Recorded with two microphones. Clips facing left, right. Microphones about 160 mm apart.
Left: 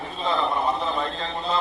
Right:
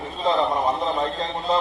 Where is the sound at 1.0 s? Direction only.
35° right (ahead or behind).